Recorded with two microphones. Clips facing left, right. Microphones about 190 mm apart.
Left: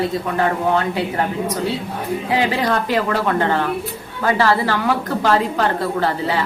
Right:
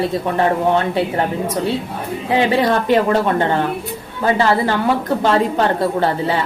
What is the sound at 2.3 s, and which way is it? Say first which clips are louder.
A woman's voice: right 5 dB; 25° right (ahead or behind).